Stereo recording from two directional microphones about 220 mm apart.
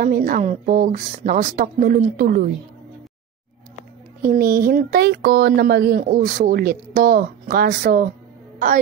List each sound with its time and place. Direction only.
0.0 s a woman's voice: 40° right (ahead or behind)
4.2 s speech: 40° right (ahead or behind)